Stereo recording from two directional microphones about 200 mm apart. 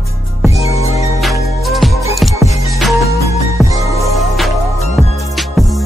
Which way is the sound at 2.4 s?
15° right (ahead or behind).